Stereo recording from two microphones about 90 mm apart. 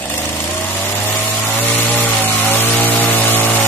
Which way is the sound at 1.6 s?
20° left (ahead or behind).